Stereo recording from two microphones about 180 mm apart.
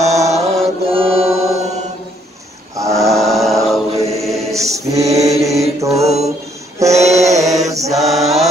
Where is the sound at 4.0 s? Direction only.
35° right (ahead or behind).